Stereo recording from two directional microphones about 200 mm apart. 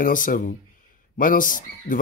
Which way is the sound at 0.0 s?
40° left (ahead or behind).